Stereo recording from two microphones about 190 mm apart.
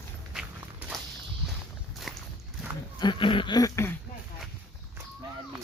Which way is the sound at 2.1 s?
Centre (ahead or behind).